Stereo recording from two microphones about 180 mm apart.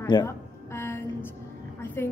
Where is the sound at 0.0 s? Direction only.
25° left (ahead or behind).